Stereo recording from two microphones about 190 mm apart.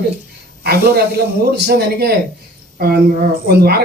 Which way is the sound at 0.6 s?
55° right (ahead or behind).